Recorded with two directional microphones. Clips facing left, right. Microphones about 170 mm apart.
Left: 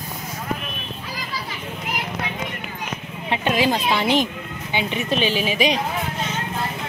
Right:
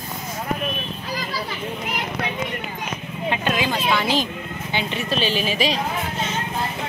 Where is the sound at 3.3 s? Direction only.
25° left (ahead or behind).